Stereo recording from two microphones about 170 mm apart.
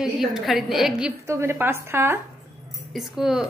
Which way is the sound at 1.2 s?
15° right (ahead or behind).